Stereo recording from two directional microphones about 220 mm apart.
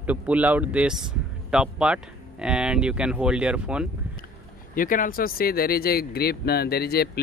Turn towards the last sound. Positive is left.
turn(degrees=45)  # may be behind; listen again after turning